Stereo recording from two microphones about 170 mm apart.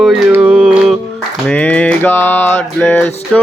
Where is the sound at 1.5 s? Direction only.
5° left (ahead or behind).